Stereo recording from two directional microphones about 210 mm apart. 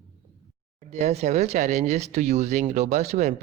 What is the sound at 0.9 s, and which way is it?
Speech, 30° right (ahead or behind).